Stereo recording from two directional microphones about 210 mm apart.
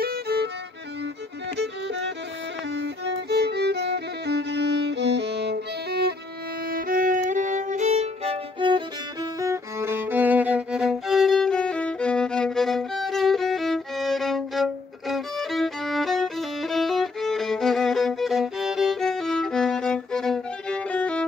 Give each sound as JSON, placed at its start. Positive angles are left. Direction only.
{"t": 0.0, "sound": "violin", "side_deg": -45}
{"t": 1.6, "sound": "music", "side_deg": -55}
{"t": 2.7, "sound": "violin", "side_deg": -55}